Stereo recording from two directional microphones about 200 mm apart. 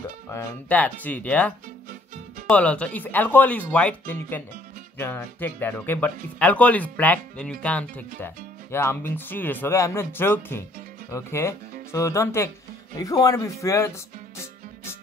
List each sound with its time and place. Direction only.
0.3 s speech: 10° left (ahead or behind)